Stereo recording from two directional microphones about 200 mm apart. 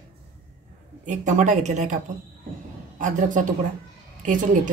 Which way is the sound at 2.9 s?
40° right (ahead or behind).